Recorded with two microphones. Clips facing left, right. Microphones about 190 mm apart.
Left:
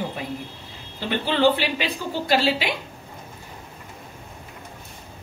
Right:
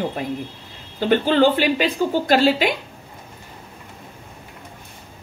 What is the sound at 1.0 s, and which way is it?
A woman's voice, 50° right (ahead or behind).